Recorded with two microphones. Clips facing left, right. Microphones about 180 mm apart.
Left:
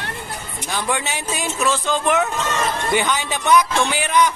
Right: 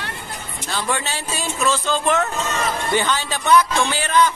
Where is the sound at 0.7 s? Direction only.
15° left (ahead or behind).